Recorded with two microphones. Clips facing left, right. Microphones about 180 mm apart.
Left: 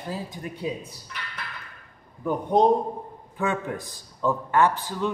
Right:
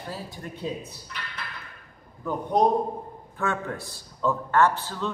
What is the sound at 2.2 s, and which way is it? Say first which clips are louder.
A man's voice: left 2 dB; 20° left (ahead or behind).